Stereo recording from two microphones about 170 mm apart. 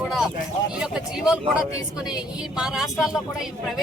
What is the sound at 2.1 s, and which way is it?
Speech, 5° right (ahead or behind).